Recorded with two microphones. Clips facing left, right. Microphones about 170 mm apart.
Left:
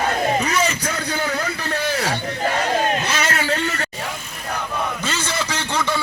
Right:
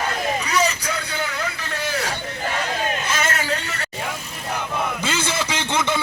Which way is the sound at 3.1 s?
45° right (ahead or behind).